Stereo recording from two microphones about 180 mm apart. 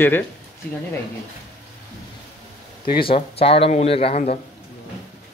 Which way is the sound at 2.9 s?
30° left (ahead or behind).